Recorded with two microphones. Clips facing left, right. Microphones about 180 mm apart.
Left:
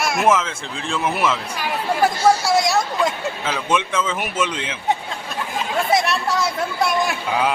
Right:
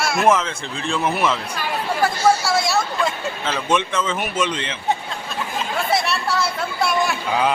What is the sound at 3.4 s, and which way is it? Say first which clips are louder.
Speech: right 1 dB; 5° left (ahead or behind).